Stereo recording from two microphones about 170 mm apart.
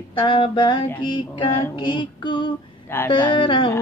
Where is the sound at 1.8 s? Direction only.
30° left (ahead or behind).